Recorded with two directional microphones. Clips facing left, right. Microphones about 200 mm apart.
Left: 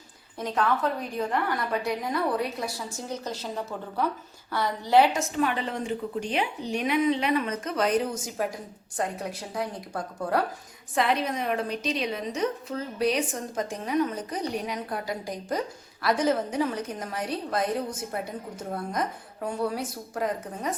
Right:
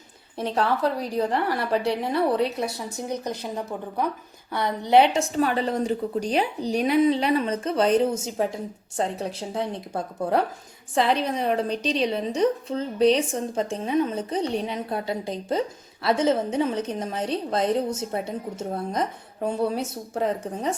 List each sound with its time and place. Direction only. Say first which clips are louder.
0.3 s a woman's voice: right 2 dB; 30° right (ahead or behind)
3.0 s a woman's voice: right 5 dB; 15° right (ahead or behind)